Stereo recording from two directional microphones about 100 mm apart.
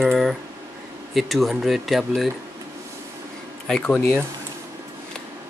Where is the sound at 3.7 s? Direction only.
5° left (ahead or behind).